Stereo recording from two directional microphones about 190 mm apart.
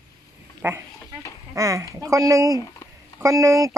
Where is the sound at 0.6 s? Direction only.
10° right (ahead or behind).